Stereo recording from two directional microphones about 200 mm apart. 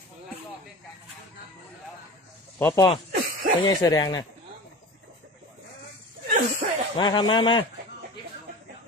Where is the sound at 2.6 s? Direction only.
15° left (ahead or behind).